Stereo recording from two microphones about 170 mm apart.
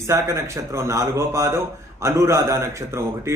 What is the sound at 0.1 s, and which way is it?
Speech, 15° right (ahead or behind).